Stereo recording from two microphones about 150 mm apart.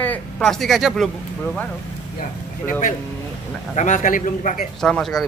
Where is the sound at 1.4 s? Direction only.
10° left (ahead or behind).